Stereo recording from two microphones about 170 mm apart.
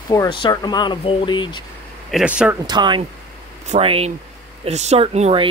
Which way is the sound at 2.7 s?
25° right (ahead or behind).